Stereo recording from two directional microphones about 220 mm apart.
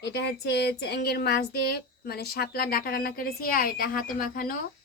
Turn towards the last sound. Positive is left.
turn(degrees=40)  # may be behind; listen again after turning